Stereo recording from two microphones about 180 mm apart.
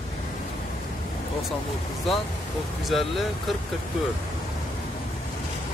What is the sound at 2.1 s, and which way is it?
Speech, centre (ahead or behind).